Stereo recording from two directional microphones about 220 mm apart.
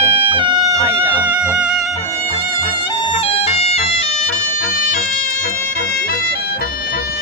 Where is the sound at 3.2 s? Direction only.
25° left (ahead or behind).